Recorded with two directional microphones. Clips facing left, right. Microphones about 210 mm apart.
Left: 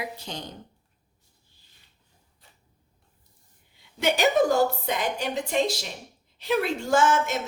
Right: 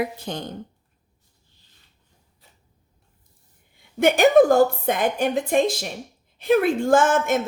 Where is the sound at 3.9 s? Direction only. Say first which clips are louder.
Right 7 dB; 50° right (ahead or behind).